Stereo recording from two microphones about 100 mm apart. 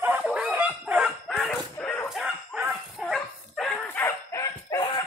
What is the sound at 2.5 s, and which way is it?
Dog, 5° right (ahead or behind).